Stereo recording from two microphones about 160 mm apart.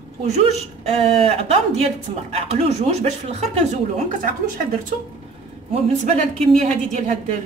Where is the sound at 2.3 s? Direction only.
40° right (ahead or behind).